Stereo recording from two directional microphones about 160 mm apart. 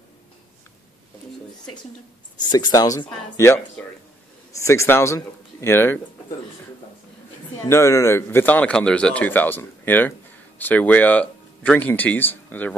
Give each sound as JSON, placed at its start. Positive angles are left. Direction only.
{"t": 2.5, "sound": "speech", "side_deg": 25}
{"t": 7.6, "sound": "speech", "side_deg": 20}